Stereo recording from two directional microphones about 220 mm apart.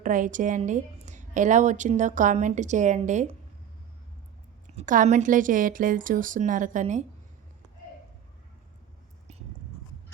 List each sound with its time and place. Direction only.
0.0 s a woman's voice: 35° right (ahead or behind)
4.8 s a woman's voice: 35° right (ahead or behind)